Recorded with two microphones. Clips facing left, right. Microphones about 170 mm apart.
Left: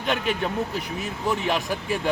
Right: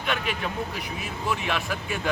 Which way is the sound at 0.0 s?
40° left (ahead or behind).